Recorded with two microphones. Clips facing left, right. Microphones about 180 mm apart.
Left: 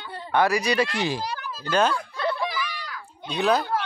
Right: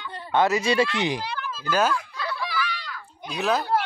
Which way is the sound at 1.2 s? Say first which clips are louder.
Right 1 dB; 40° left (ahead or behind).